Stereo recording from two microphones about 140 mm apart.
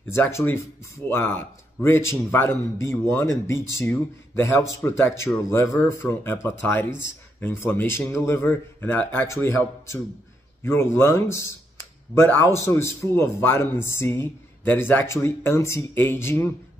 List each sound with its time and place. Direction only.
0.1 s speech: 20° left (ahead or behind)